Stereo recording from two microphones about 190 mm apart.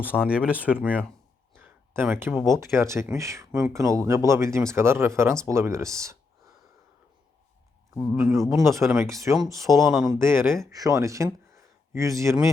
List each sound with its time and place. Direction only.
0.0 s speech: 5° right (ahead or behind)
1.5 s a sound: 10° right (ahead or behind)
2.6 s speech: 15° right (ahead or behind)
7.9 s speech: 5° left (ahead or behind)
8.6 s speech: 15° right (ahead or behind)
9.8 s speech: centre (ahead or behind)
10.1 s speech: 15° right (ahead or behind)